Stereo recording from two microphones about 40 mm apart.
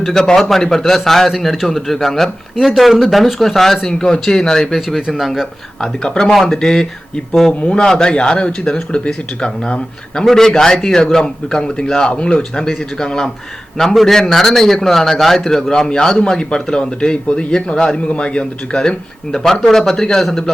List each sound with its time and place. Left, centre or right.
0.1 s a man's voice: centre
5.1 s speech: centre
5.8 s a man's voice: left
10.2 s a man's voice: centre